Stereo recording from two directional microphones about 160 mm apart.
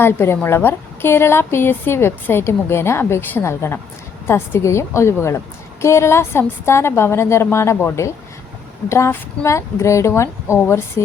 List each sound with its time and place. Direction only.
0.0 s a woman's voice: 15° left (ahead or behind)